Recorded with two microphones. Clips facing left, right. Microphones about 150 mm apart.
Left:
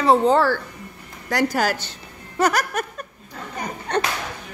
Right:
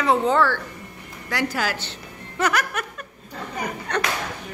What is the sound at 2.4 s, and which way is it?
Laughter, 40° left (ahead or behind).